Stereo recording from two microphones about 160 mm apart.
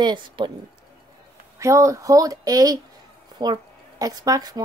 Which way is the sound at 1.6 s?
20° right (ahead or behind).